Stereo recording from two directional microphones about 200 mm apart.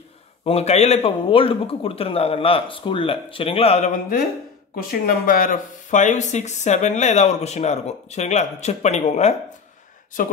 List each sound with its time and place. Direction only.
0.4 s speech: 30° left (ahead or behind)